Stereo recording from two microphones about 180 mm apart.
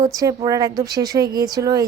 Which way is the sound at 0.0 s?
20° right (ahead or behind).